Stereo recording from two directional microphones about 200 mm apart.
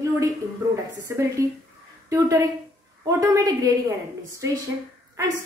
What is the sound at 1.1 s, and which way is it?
A woman's voice, 15° right (ahead or behind).